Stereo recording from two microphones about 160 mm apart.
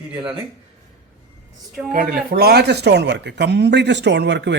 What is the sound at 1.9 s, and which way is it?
A man's voice, 65° right (ahead or behind).